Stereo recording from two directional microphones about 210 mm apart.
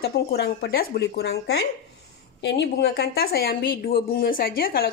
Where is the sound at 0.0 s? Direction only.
50° left (ahead or behind).